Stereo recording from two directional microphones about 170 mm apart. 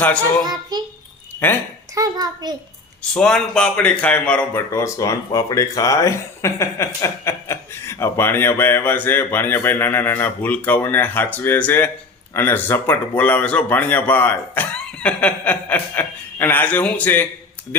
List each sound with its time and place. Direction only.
0.4 s a child's voice: 25° right (ahead or behind)
2.0 s a child's voice: 25° right (ahead or behind)
3.0 s a man's voice: 5° left (ahead or behind)